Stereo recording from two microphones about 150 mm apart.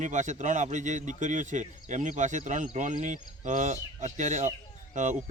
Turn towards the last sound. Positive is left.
turn(degrees=-55)  # may be behind; listen again after turning